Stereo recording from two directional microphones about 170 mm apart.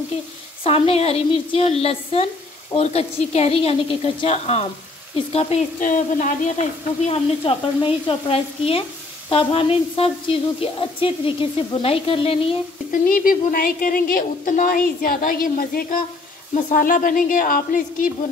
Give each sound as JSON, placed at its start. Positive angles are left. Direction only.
{"t": 0.7, "sound": "a woman's voice", "side_deg": 35}
{"t": 5.8, "sound": "a woman's voice", "side_deg": 50}
{"t": 12.9, "sound": "a woman's voice", "side_deg": 55}